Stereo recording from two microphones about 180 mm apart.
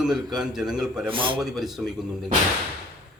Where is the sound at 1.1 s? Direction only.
30° right (ahead or behind).